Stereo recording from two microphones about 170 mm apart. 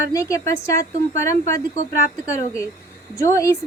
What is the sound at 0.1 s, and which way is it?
A woman's voice, 20° left (ahead or behind).